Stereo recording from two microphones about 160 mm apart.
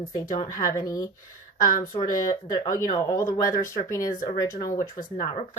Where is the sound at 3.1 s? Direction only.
20° left (ahead or behind).